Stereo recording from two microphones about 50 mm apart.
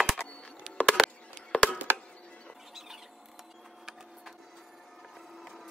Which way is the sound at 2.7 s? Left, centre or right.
Centre.